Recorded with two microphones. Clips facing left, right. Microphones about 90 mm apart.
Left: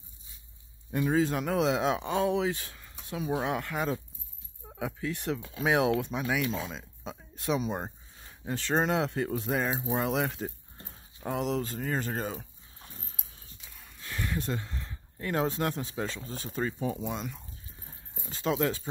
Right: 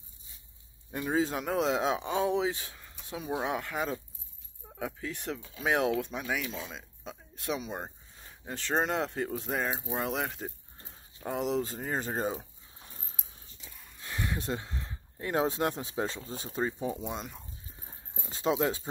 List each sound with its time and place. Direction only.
0.9 s speech: 5° right (ahead or behind)
8.5 s speech: centre (ahead or behind)
11.9 s speech: 15° right (ahead or behind)
13.9 s speech: 15° right (ahead or behind)
18.3 s speech: 20° right (ahead or behind)